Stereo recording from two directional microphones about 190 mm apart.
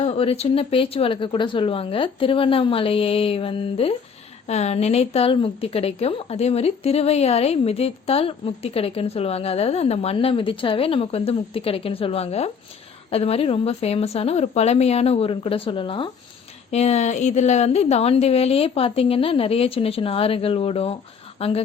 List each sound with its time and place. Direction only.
0.0 s a woman's voice: 30° left (ahead or behind)